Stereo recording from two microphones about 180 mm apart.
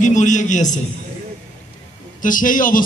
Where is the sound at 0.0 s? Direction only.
45° left (ahead or behind).